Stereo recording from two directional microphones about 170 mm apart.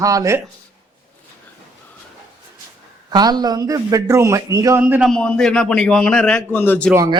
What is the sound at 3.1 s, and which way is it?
A man's voice, 25° right (ahead or behind).